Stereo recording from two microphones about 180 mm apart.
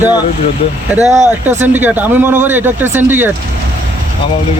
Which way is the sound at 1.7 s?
10° right (ahead or behind).